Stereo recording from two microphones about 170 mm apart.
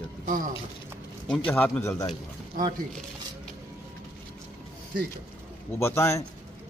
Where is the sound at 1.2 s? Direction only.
5° left (ahead or behind).